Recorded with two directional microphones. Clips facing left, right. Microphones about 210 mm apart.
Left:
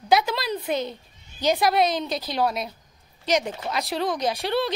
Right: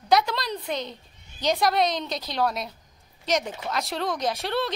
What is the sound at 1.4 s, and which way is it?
Speech, 5° left (ahead or behind).